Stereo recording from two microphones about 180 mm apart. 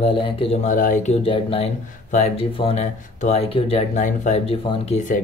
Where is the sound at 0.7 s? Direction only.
45° left (ahead or behind).